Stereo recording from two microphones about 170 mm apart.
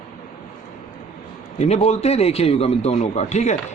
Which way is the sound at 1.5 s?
40° left (ahead or behind).